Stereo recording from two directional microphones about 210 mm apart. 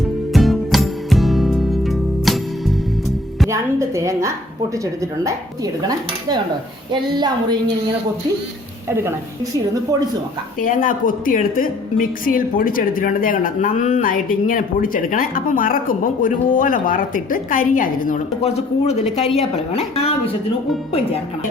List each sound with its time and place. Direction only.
0.3 s music: centre (ahead or behind)
3.5 s a woman's voice: 15° right (ahead or behind)
6.9 s a woman's voice: 20° right (ahead or behind)
8.9 s a woman's voice: 10° right (ahead or behind)
10.6 s a woman's voice: 40° left (ahead or behind)